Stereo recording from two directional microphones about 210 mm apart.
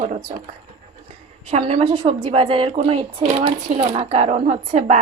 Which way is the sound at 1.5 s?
30° right (ahead or behind).